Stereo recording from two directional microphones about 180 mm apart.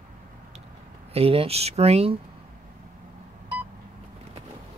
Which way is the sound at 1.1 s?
30° right (ahead or behind).